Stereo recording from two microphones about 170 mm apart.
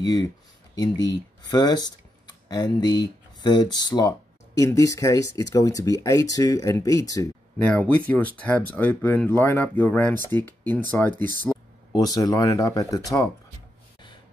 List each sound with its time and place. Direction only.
0.0 s speech: 25° left (ahead or behind)
7.5 s speech: 5° left (ahead or behind)
11.9 s speech: 20° left (ahead or behind)